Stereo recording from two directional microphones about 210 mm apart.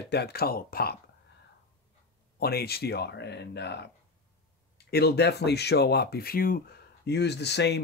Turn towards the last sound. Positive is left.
turn(degrees=55)  # may be behind; listen again after turning